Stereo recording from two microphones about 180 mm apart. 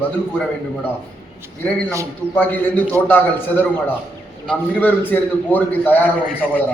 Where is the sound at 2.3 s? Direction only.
10° left (ahead or behind).